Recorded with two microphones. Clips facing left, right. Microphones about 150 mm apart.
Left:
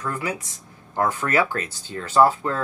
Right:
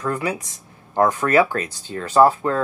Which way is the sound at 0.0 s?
30° right (ahead or behind).